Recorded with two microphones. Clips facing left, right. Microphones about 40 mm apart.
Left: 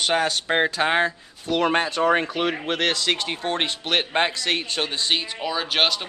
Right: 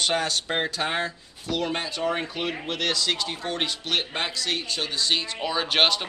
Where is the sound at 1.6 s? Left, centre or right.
Left.